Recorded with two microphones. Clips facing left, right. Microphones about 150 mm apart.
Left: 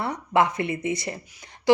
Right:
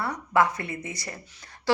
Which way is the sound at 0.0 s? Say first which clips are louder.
Left 1 dB; 25° left (ahead or behind).